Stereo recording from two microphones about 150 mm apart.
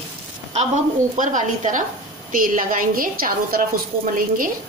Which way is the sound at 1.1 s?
55° right (ahead or behind).